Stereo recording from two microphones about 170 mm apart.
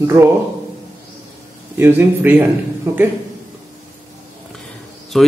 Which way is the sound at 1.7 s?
10° right (ahead or behind).